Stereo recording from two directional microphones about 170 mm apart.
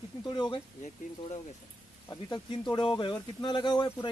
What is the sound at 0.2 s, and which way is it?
Speech, 25° left (ahead or behind).